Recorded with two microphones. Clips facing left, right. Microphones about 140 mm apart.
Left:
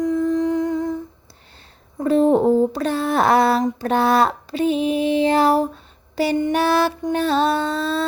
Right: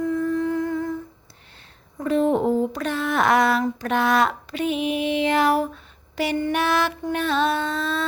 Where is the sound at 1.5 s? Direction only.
35° left (ahead or behind).